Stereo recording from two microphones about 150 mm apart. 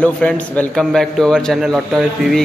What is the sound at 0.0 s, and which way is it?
A man's voice, 10° left (ahead or behind).